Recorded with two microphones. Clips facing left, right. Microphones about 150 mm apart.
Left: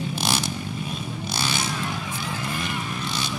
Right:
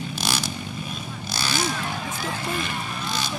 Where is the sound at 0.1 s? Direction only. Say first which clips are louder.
Left 2 dB; 20° left (ahead or behind).